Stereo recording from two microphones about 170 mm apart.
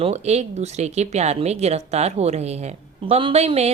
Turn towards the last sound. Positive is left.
turn(degrees=-40)  # may be behind; listen again after turning